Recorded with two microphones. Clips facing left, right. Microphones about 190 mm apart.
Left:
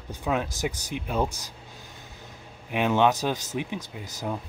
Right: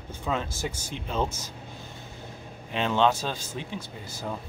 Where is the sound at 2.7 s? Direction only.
15° left (ahead or behind).